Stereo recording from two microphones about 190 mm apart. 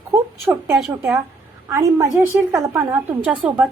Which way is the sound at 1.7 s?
15° right (ahead or behind).